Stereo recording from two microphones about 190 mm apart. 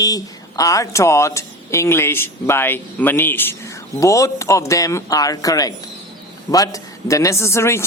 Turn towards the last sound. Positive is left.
turn(degrees=15)  # may be behind; listen again after turning